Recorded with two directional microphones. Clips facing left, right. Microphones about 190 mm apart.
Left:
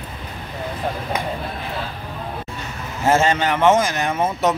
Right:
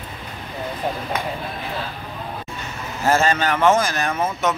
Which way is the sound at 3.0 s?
20° left (ahead or behind).